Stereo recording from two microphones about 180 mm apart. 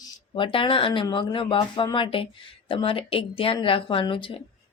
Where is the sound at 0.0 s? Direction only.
30° left (ahead or behind).